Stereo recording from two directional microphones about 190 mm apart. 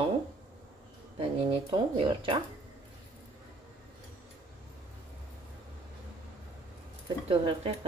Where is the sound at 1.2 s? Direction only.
30° right (ahead or behind).